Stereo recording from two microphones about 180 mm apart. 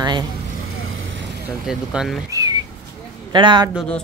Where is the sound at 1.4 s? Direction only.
5° right (ahead or behind).